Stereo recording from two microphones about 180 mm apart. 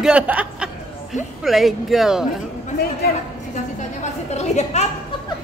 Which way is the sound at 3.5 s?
40° left (ahead or behind).